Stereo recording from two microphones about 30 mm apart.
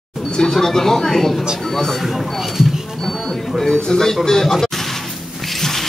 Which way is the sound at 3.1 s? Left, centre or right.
Centre.